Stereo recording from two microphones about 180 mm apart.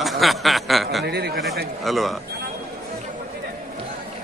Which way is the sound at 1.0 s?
65° right (ahead or behind).